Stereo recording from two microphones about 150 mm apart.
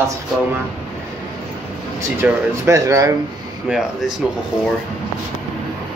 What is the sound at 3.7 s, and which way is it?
Speech, 5° right (ahead or behind).